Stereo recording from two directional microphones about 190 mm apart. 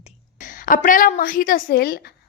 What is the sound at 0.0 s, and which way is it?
A woman's voice, 40° left (ahead or behind).